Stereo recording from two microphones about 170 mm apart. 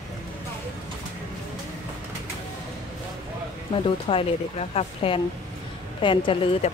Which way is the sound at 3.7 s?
35° left (ahead or behind).